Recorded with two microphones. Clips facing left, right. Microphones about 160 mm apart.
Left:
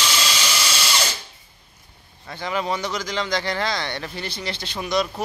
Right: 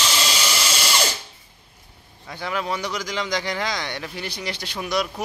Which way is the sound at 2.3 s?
5° right (ahead or behind).